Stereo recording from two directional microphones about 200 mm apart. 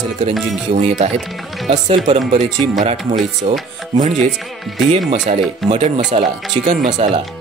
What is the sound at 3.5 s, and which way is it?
Speech, 35° right (ahead or behind).